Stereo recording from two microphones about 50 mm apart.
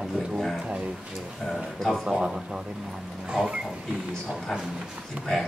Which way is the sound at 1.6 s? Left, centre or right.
Centre.